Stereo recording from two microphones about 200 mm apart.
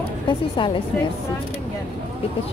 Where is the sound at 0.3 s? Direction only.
25° left (ahead or behind).